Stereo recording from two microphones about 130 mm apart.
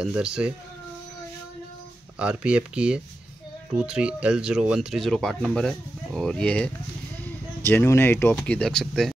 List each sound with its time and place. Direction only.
0.0 s speech: 5° right (ahead or behind)
2.1 s speech: 10° right (ahead or behind); by 6.7 s 10° left (ahead or behind)
7.6 s speech: 20° left (ahead or behind); by 9.1 s 5° left (ahead or behind)